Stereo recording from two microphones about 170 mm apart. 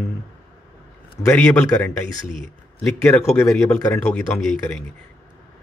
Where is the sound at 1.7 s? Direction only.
20° left (ahead or behind); by 4.8 s 5° left (ahead or behind).